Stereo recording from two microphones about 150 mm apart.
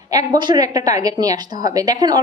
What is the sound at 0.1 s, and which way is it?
A woman's voice, 25° right (ahead or behind).